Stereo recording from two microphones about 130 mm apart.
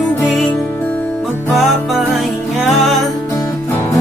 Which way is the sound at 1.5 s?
Centre (ahead or behind).